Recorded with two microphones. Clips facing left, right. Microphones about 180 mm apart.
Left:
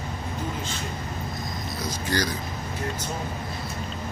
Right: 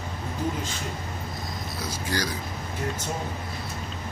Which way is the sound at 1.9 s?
10° right (ahead or behind).